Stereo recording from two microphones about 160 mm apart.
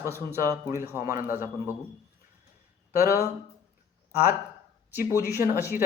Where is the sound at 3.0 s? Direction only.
15° right (ahead or behind).